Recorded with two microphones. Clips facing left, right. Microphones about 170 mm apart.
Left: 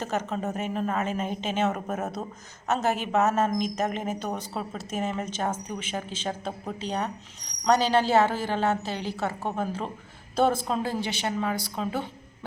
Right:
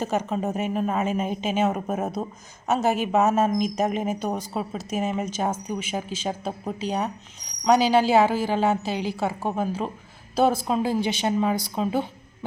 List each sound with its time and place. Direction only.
0.0 s speech: 10° right (ahead or behind)